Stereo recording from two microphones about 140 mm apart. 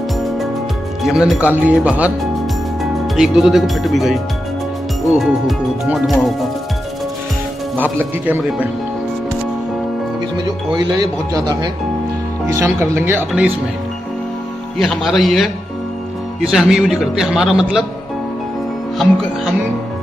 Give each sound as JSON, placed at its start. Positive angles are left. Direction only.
{"t": 1.0, "sound": "speech", "side_deg": 0}
{"t": 8.0, "sound": "speech", "side_deg": -10}
{"t": 10.3, "sound": "speech", "side_deg": -30}
{"t": 14.8, "sound": "speech", "side_deg": 0}